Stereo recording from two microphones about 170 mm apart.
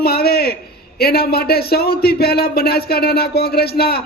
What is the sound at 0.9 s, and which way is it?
Speech, 65° left (ahead or behind).